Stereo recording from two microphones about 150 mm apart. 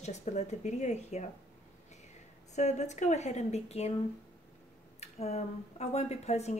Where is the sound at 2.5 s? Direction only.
50° left (ahead or behind).